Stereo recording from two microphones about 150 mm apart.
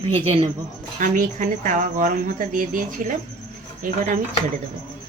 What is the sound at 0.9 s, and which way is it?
Speech, 60° right (ahead or behind).